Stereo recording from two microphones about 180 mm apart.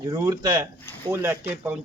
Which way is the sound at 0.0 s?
20° right (ahead or behind).